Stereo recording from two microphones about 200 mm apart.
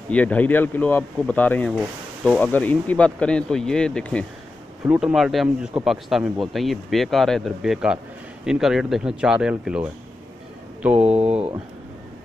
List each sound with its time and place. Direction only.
0.1 s speech: 5° left (ahead or behind)
4.8 s speech: 5° right (ahead or behind)
11.0 s speech: 30° right (ahead or behind)